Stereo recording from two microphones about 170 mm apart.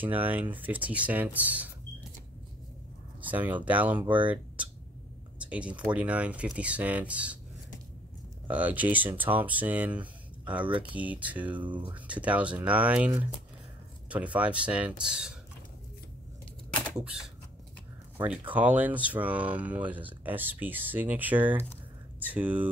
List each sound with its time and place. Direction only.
0.0 s speech: 10° right (ahead or behind)
3.2 s speech: 10° right (ahead or behind)
5.4 s speech: 5° right (ahead or behind)
8.5 s speech: 10° right (ahead or behind)
11.6 s speech: 25° right (ahead or behind)
11.9 s speech: 10° right (ahead or behind)
18.1 s a sound: 10° right (ahead or behind)
18.5 s speech: 10° right (ahead or behind)